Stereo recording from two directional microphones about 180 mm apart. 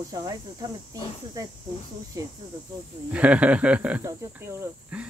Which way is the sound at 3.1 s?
5° right (ahead or behind).